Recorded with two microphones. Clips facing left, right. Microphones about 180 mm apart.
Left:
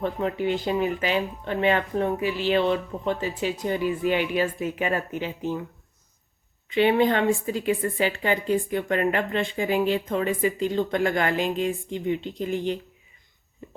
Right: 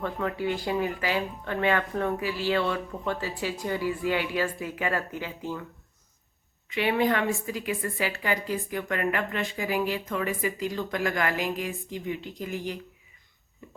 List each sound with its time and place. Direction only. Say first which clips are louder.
0.0 s a woman's voice: left 4 dB; 20° left (ahead or behind)
6.7 s a woman's voice: left 5 dB; 30° left (ahead or behind)